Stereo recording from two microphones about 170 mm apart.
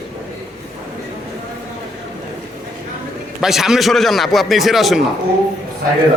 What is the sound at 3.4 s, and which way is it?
Speech, centre (ahead or behind).